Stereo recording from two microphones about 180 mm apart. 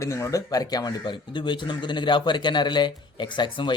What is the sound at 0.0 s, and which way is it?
Speech, 15° left (ahead or behind).